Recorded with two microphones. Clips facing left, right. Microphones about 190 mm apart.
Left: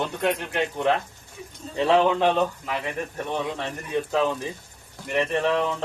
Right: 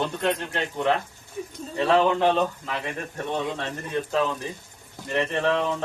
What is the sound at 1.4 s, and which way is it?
Speech, 45° right (ahead or behind).